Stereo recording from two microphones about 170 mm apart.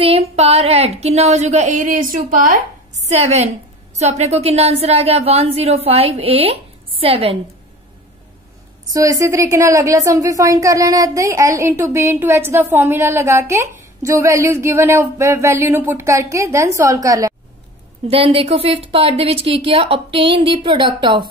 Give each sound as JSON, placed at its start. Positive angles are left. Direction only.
{"t": 0.0, "sound": "speech", "side_deg": -35}
{"t": 3.1, "sound": "speech", "side_deg": -40}
{"t": 8.9, "sound": "speech", "side_deg": -20}
{"t": 18.0, "sound": "speech", "side_deg": -35}